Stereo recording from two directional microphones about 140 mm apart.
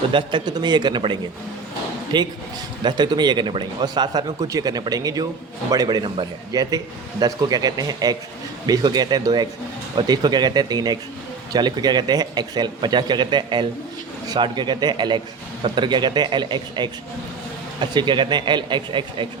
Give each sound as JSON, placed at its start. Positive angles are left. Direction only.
{"t": 0.1, "sound": "a man's voice", "side_deg": -35}